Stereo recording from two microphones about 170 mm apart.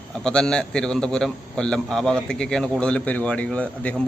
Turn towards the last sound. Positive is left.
turn(degrees=10)  # may be behind; listen again after turning